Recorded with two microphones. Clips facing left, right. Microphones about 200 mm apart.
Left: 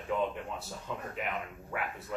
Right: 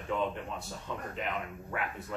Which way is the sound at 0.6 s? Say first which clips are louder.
Even; 5° left (ahead or behind).